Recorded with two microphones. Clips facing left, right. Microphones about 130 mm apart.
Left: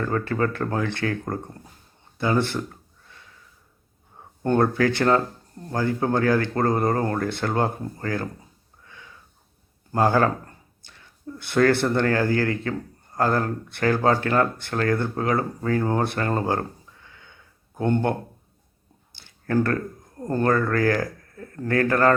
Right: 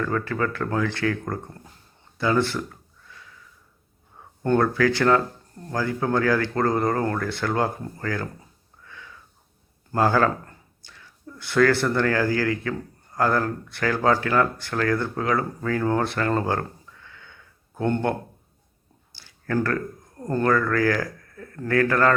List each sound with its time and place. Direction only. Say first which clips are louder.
0.0 s speech: left 1 dB; 35° left (ahead or behind)
4.4 s speech: even; 25° left (ahead or behind)
8.8 s wheeze: right 2 dB; 25° left (ahead or behind)
9.9 s speech: even; 25° left (ahead or behind)
19.1 s speech: left 2 dB; 25° left (ahead or behind)